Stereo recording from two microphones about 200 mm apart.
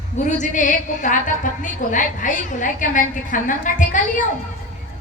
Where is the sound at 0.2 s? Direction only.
35° left (ahead or behind).